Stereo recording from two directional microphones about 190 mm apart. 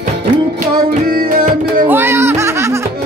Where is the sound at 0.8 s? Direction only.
50° right (ahead or behind).